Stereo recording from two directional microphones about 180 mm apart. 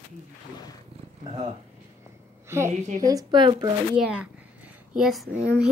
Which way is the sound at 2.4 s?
15° right (ahead or behind).